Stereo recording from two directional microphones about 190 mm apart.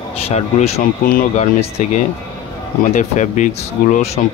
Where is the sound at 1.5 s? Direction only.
35° left (ahead or behind).